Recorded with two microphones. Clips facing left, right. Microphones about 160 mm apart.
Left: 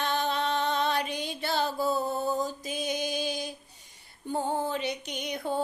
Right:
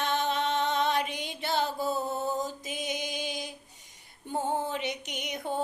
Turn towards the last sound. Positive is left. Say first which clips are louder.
# left 2 dB
turn(degrees=-20)  # may be behind; listen again after turning